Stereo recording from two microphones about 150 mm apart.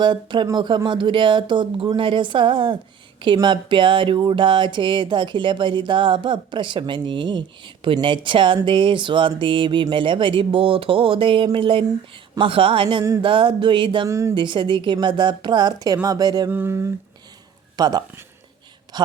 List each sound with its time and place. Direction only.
0.0 s speech: 30° right (ahead or behind)
14.1 s speech: 20° right (ahead or behind)
14.3 s speech: 30° right (ahead or behind)
16.5 s a sound: 15° right (ahead or behind)
17.7 s speech: 25° right (ahead or behind)